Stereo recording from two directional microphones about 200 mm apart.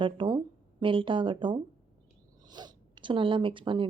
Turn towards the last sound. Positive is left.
turn(degrees=-25)  # may be behind; listen again after turning